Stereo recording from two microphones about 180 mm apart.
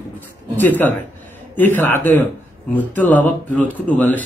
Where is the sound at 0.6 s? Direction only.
10° left (ahead or behind).